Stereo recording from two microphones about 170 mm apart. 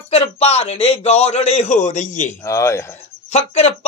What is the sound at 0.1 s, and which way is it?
Speech, 35° left (ahead or behind).